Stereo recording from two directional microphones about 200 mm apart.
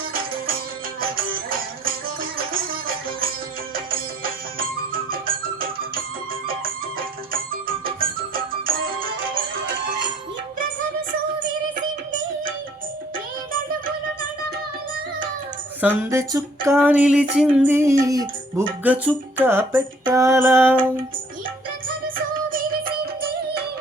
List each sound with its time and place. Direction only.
1.1 s music: 45° right (ahead or behind)
7.5 s music: 45° right (ahead or behind)
15.8 s a sound: 10° right (ahead or behind)
22.4 s music: 45° right (ahead or behind)